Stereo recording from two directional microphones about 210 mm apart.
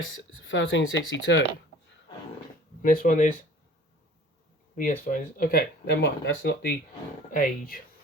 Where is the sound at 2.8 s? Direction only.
40° left (ahead or behind).